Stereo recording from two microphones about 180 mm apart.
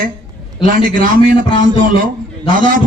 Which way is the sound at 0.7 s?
50° right (ahead or behind).